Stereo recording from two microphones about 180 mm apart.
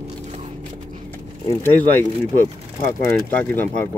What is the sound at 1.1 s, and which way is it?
Speech, 10° left (ahead or behind).